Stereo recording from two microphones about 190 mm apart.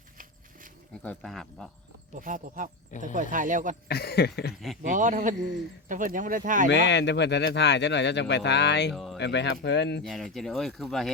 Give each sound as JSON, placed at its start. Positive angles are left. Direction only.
{"t": 1.0, "sound": "speech", "side_deg": 5}
{"t": 2.1, "sound": "speech", "side_deg": -45}
{"t": 3.8, "sound": "speech", "side_deg": 55}
{"t": 4.9, "sound": "speech", "side_deg": -40}
{"t": 6.7, "sound": "speech", "side_deg": 65}
{"t": 8.9, "sound": "speech", "side_deg": 0}
{"t": 9.1, "sound": "speech", "side_deg": 65}
{"t": 10.0, "sound": "speech", "side_deg": 0}